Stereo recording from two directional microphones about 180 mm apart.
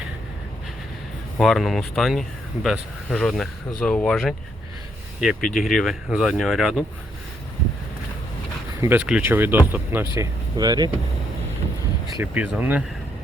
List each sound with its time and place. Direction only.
1.4 s speech: centre (ahead or behind)
8.8 s speech: 10° right (ahead or behind)
10.6 s speech: 20° right (ahead or behind)
12.0 s speech: 20° right (ahead or behind)
12.3 s speech: 10° right (ahead or behind)